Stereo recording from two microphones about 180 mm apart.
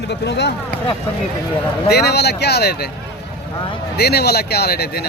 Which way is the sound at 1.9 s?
65° left (ahead or behind).